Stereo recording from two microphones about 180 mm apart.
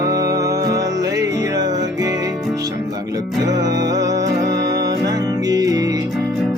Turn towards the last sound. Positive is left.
turn(degrees=-20)  # may be behind; listen again after turning